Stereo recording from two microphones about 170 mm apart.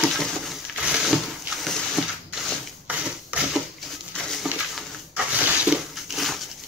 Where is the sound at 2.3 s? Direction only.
5° right (ahead or behind).